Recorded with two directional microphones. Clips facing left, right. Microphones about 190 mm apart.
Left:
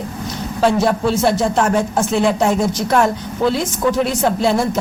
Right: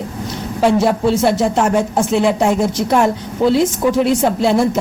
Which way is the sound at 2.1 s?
10° right (ahead or behind).